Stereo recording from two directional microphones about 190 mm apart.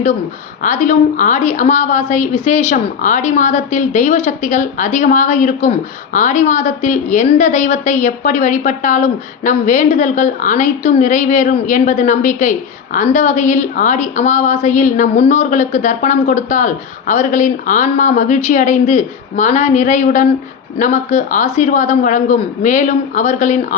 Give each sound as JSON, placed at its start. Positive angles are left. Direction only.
{"t": 0.6, "sound": "a woman's voice", "side_deg": 40}